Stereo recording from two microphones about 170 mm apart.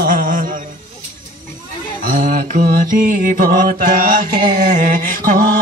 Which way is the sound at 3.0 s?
55° right (ahead or behind).